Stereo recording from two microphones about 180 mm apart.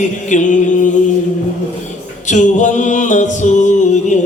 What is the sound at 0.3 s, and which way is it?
Speech, 45° left (ahead or behind).